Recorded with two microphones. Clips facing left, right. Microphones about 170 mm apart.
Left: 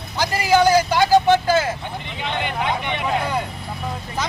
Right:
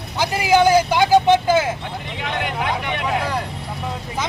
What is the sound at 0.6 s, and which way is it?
Vehicle, 20° right (ahead or behind).